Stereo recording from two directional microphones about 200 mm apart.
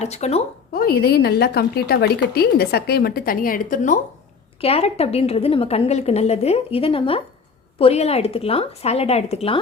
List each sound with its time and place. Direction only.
0.0 s a woman's voice: 30° left (ahead or behind)
0.7 s a woman's voice: 50° left (ahead or behind)
4.6 s a woman's voice: 30° left (ahead or behind)